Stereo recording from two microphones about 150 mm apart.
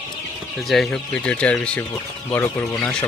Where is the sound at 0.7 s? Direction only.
5° left (ahead or behind).